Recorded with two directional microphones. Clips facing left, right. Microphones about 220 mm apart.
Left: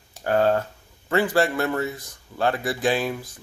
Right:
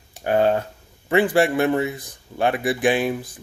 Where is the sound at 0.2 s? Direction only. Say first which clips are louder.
Right 1 dB; 20° right (ahead or behind).